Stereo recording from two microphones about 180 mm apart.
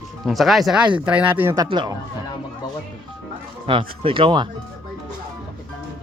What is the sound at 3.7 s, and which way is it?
Speech, 30° right (ahead or behind).